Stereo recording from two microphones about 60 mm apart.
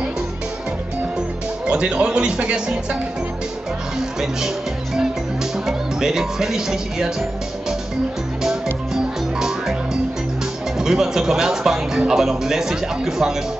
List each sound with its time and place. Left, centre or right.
1.7 s speech: centre
5.7 s speech: centre
8.9 s frog: centre
10.8 s speech: centre